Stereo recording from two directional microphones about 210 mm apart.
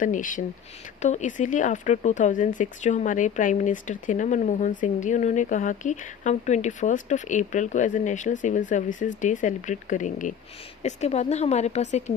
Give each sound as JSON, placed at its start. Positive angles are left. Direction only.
{"t": 0.0, "sound": "speech", "side_deg": 40}